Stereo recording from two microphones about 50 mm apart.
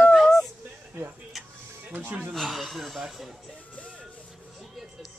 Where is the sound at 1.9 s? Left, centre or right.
Right.